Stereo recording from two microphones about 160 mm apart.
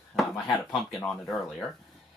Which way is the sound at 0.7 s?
Centre (ahead or behind).